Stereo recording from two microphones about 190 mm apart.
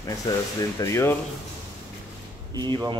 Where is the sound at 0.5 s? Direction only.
20° left (ahead or behind).